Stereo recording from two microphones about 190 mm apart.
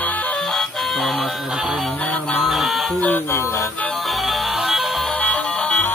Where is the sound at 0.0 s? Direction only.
10° left (ahead or behind).